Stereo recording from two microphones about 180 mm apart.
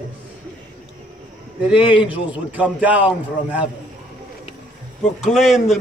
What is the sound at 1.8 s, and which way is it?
Speech, 25° left (ahead or behind).